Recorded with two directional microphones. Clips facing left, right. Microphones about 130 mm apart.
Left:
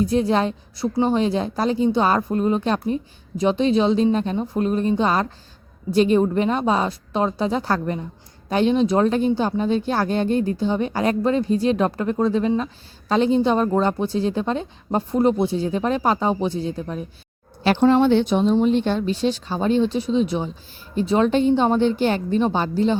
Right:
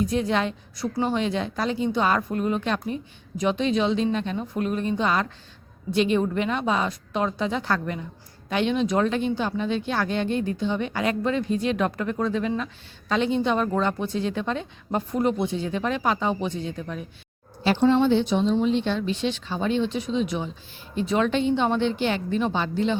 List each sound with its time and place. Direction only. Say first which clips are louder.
0.0 s speech: left 4 dB; 35° left (ahead or behind)
17.6 s speech: left 3 dB; 60° left (ahead or behind); by 23.0 s 40° left (ahead or behind)